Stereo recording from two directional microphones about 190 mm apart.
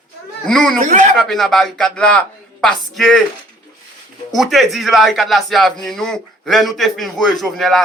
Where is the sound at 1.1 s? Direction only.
Centre (ahead or behind).